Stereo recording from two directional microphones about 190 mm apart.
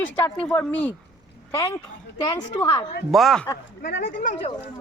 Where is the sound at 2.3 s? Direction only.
20° left (ahead or behind).